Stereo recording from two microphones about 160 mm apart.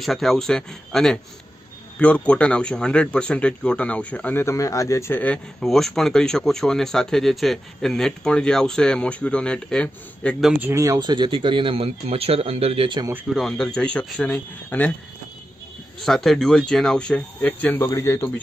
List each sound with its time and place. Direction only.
0.0 s speech: centre (ahead or behind)
10.6 s speech: 20° right (ahead or behind); by 13.0 s 35° right (ahead or behind)
13.3 s speech: centre (ahead or behind)
16.0 s speech: centre (ahead or behind); by 18.3 s 15° left (ahead or behind)